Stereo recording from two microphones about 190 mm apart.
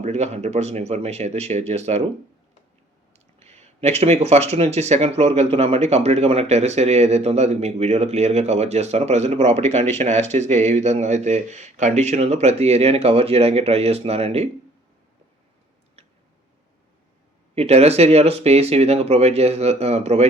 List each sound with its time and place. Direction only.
0.0 s speech: 35° right (ahead or behind)
3.1 s speech: 35° right (ahead or behind)
17.5 s speech: 35° right (ahead or behind)